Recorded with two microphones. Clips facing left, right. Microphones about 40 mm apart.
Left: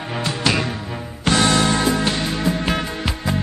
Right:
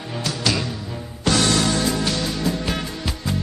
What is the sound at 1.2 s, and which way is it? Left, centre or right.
Music, left.